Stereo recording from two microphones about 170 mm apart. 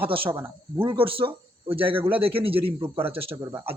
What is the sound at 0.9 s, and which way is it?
A man's voice, 30° right (ahead or behind).